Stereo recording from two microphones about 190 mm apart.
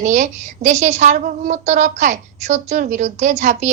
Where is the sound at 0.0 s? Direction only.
40° right (ahead or behind).